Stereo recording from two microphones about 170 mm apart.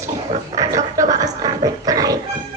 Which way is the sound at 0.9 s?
20° right (ahead or behind).